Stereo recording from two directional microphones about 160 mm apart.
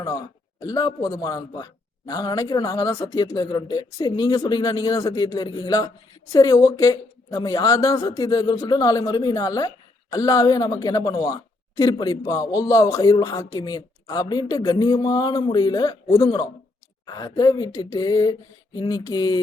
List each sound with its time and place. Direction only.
0.6 s speech: 25° left (ahead or behind)